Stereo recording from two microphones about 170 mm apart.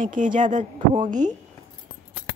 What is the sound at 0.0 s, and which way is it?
Speech, 50° right (ahead or behind).